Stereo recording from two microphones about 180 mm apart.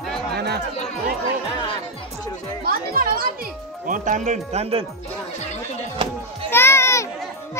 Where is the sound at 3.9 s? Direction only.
45° right (ahead or behind).